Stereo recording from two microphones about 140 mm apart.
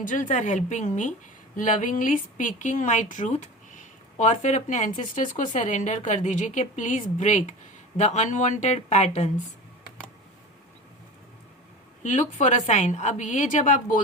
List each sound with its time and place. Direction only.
0.1 s a woman's voice: 65° left (ahead or behind)
12.0 s a woman's voice: 60° left (ahead or behind)